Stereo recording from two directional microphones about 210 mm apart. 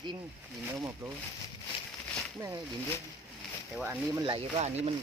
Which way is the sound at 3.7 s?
10° right (ahead or behind).